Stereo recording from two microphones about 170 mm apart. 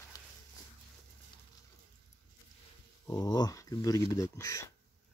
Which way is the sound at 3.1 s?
25° left (ahead or behind).